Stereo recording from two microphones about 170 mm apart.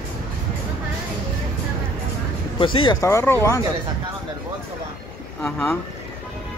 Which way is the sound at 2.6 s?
30° left (ahead or behind).